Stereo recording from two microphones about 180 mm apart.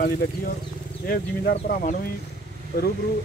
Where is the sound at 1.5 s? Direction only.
45° left (ahead or behind).